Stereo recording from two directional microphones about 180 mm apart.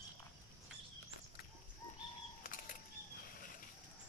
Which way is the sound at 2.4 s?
50° left (ahead or behind).